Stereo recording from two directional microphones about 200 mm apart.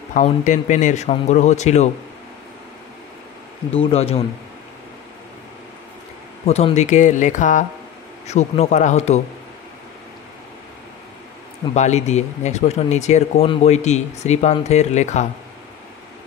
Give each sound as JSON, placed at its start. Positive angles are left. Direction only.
{"t": 0.1, "sound": "speech", "side_deg": 40}
{"t": 3.7, "sound": "speech", "side_deg": 30}
{"t": 6.4, "sound": "speech", "side_deg": 30}
{"t": 11.7, "sound": "speech", "side_deg": 35}